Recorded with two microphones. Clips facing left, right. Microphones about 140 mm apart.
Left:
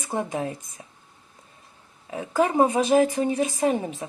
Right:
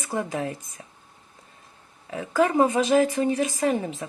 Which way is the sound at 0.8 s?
15° left (ahead or behind).